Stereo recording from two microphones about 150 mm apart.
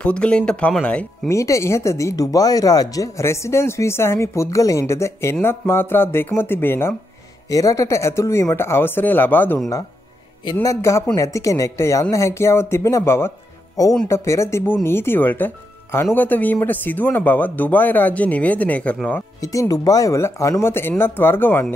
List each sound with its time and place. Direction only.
0.0 s speech: 5° left (ahead or behind)
1.3 s speech: 20° left (ahead or behind)
10.4 s speech: 25° left (ahead or behind); by 19.2 s 10° left (ahead or behind)
19.4 s speech: 20° left (ahead or behind)